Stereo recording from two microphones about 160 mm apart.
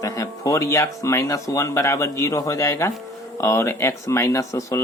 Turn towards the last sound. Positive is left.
turn(degrees=20)  # may be behind; listen again after turning